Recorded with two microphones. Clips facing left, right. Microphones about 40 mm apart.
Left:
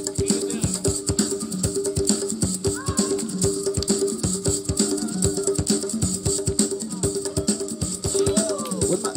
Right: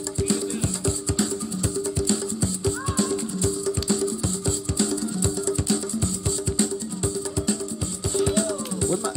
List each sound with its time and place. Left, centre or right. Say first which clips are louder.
0.2 s music: left 1 dB; right
8.4 s music: left 2 dB; right